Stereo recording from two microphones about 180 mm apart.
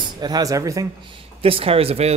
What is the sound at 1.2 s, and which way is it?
Speech, 30° right (ahead or behind).